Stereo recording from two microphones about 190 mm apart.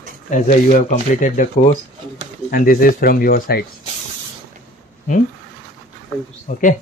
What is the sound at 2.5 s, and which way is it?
Speech, 50° left (ahead or behind).